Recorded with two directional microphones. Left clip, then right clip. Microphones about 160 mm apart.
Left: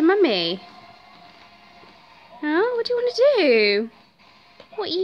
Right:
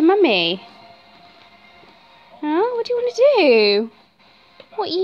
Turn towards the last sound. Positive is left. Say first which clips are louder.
# right 3 dB
turn(degrees=-10)  # may be behind; listen again after turning